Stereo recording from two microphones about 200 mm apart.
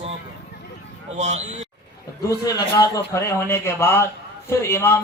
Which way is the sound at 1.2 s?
35° right (ahead or behind).